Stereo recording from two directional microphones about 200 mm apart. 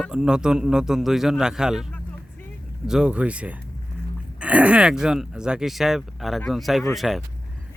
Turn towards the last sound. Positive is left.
turn(degrees=0)  # may be behind; listen again after turning